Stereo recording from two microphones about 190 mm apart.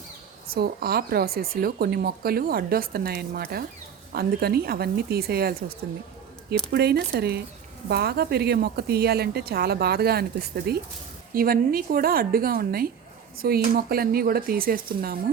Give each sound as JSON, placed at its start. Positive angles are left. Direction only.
{"t": 0.5, "sound": "a woman's voice", "side_deg": -55}
{"t": 6.7, "sound": "a woman's voice", "side_deg": -55}